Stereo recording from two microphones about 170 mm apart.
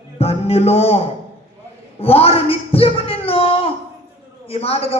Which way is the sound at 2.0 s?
35° left (ahead or behind).